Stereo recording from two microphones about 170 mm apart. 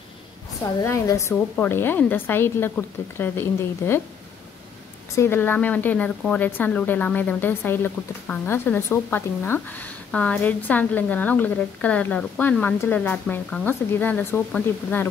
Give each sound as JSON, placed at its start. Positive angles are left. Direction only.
{"t": 0.7, "sound": "a woman's voice", "side_deg": 20}
{"t": 5.1, "sound": "a woman's voice", "side_deg": 15}